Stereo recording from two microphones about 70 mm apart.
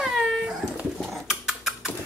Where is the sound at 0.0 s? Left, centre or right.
Centre.